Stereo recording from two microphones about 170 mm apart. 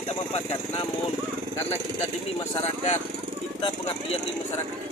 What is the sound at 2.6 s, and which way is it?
Speech, 40° left (ahead or behind).